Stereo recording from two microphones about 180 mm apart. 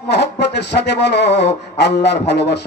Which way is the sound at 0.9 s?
70° left (ahead or behind).